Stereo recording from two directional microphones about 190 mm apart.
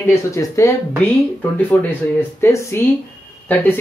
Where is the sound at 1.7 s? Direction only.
10° left (ahead or behind).